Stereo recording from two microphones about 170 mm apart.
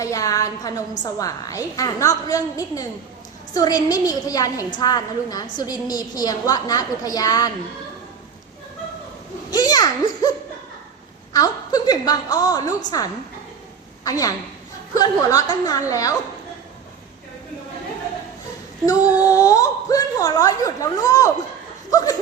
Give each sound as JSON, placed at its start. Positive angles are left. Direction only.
{"t": 0.0, "sound": "a woman's voice", "side_deg": 20}
{"t": 9.5, "sound": "a child's voice", "side_deg": 25}
{"t": 11.3, "sound": "a woman's voice", "side_deg": 20}
{"t": 19.1, "sound": "a woman's voice", "side_deg": 20}